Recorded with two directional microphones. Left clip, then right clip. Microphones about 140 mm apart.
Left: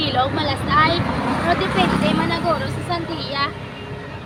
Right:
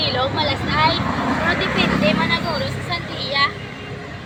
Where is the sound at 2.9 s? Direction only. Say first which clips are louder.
Right 2 dB; 45° left (ahead or behind).